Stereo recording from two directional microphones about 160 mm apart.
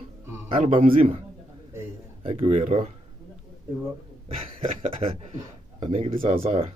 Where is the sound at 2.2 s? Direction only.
40° right (ahead or behind).